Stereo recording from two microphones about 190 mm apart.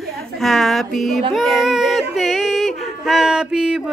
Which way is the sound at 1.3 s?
Centre (ahead or behind).